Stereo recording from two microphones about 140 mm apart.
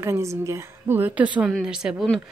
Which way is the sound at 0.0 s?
20° right (ahead or behind).